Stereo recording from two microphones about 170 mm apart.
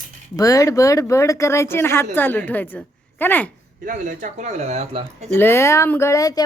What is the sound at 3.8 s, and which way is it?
Speech, 50° right (ahead or behind).